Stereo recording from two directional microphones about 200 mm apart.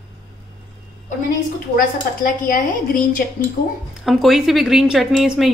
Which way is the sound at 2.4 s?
45° left (ahead or behind).